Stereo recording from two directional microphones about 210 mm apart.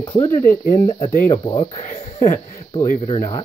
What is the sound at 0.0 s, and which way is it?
Speech, 25° left (ahead or behind).